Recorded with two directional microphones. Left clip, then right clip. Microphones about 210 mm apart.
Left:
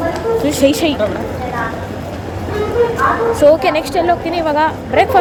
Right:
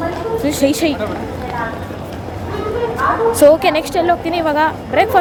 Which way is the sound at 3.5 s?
20° right (ahead or behind).